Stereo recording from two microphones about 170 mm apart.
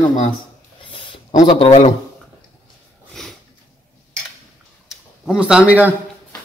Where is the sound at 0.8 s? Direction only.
30° left (ahead or behind).